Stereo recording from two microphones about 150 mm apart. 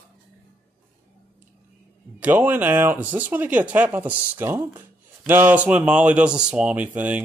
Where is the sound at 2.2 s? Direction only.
10° right (ahead or behind).